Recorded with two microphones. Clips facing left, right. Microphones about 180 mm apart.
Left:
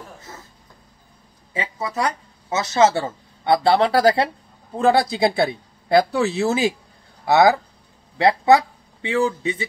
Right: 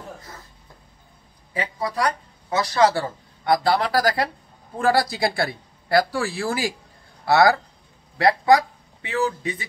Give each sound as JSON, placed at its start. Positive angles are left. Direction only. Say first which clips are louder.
{"t": 1.5, "sound": "speech", "louder": "even", "side_deg": 25}